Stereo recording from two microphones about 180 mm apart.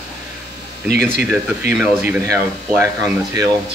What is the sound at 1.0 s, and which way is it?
Speech, 5° right (ahead or behind).